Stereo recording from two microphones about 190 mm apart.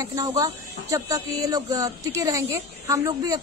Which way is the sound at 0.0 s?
20° right (ahead or behind).